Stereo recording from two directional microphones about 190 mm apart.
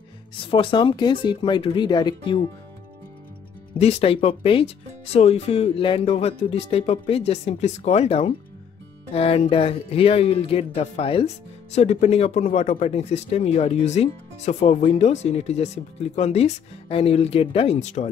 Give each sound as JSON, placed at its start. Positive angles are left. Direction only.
{"t": 0.5, "sound": "speech", "side_deg": 25}
{"t": 3.8, "sound": "speech", "side_deg": 30}